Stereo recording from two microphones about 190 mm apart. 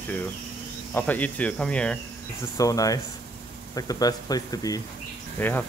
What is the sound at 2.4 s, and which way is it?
Speech, 20° left (ahead or behind).